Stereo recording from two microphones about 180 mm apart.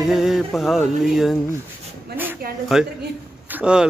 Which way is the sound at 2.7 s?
Centre (ahead or behind).